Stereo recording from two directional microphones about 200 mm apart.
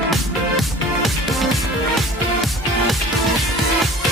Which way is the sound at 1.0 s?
Centre (ahead or behind).